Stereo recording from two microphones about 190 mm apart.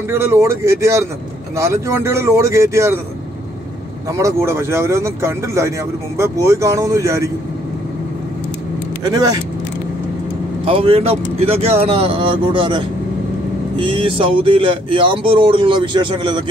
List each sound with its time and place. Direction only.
0.1 s speech: 15° right (ahead or behind)
4.1 s speech: 15° right (ahead or behind)
9.0 s speech: 20° right (ahead or behind)
10.6 s speech: 30° right (ahead or behind)